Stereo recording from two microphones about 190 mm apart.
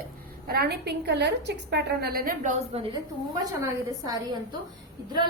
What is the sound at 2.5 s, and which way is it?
Speech, 30° right (ahead or behind).